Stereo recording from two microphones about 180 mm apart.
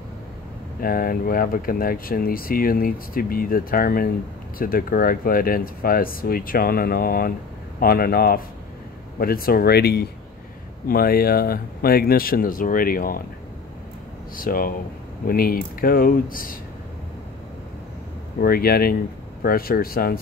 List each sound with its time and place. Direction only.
0.7 s speech: 50° left (ahead or behind)
14.3 s speech: 50° left (ahead or behind)
18.4 s speech: 55° left (ahead or behind)